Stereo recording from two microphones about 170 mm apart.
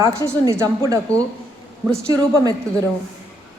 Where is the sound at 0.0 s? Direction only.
20° right (ahead or behind).